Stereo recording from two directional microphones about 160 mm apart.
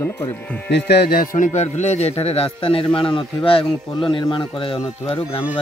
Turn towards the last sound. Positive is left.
turn(degrees=35)  # may be behind; listen again after turning